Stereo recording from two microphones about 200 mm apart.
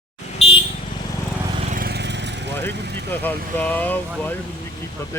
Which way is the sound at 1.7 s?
50° right (ahead or behind).